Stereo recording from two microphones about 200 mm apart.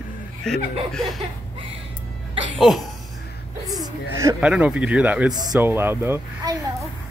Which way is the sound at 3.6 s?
20° right (ahead or behind).